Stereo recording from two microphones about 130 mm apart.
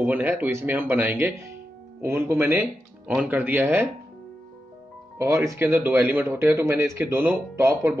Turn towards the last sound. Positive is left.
turn(degrees=-20)  # may be behind; listen again after turning